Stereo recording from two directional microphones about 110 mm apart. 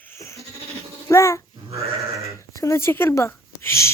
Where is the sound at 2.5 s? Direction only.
25° left (ahead or behind).